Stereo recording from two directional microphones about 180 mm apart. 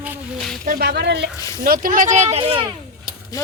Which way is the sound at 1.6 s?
50° right (ahead or behind).